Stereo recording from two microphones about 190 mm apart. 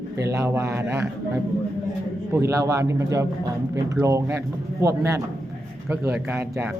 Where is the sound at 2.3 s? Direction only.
15° right (ahead or behind).